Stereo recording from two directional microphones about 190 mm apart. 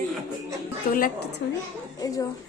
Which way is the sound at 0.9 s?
50° left (ahead or behind).